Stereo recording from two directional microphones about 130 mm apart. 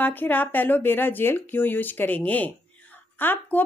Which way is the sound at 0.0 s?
15° left (ahead or behind).